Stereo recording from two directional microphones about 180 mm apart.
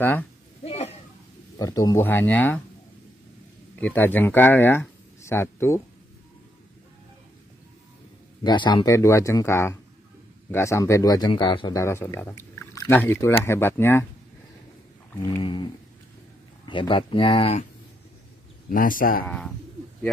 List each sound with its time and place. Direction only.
0.0 s speech: 10° left (ahead or behind)
0.7 s a sound: 35° left (ahead or behind)
1.6 s speech: 20° left (ahead or behind)
3.7 s speech: 10° left (ahead or behind)
8.5 s speech: 25° left (ahead or behind)
15.4 s speech: 25° left (ahead or behind)
18.7 s a man's voice: 50° left (ahead or behind)
19.2 s speech: 5° left (ahead or behind)